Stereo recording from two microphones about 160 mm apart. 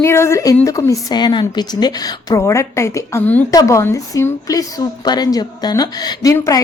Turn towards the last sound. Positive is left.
turn(degrees=20)  # may be behind; listen again after turning